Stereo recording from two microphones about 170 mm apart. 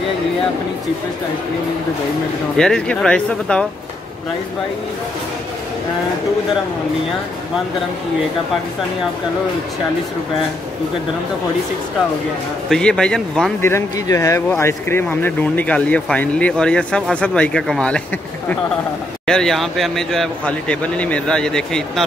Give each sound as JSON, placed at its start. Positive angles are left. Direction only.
{"t": 2.5, "sound": "speech", "side_deg": 5}
{"t": 12.6, "sound": "speech", "side_deg": 5}
{"t": 13.6, "sound": "speech", "side_deg": 15}
{"t": 19.2, "sound": "speech", "side_deg": 5}